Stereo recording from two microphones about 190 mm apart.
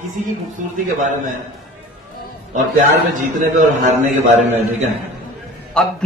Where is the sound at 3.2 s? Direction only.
40° right (ahead or behind).